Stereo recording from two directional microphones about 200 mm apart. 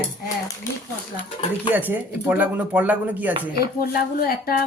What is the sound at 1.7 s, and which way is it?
Speech, 10° right (ahead or behind).